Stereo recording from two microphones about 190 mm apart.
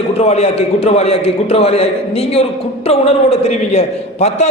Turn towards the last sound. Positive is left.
turn(degrees=35)  # may be behind; listen again after turning